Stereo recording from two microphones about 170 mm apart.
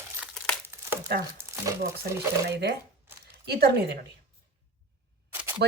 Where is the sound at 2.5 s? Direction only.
75° right (ahead or behind).